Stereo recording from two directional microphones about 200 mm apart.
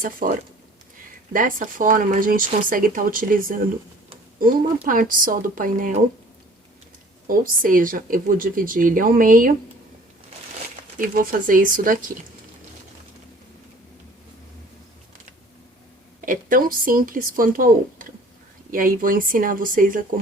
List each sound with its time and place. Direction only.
0.0 s speech: 45° right (ahead or behind)
7.3 s speech: 45° right (ahead or behind)
10.9 s speech: 45° right (ahead or behind)
16.2 s speech: 45° right (ahead or behind)